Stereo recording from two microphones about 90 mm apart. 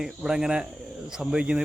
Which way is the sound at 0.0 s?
5° right (ahead or behind).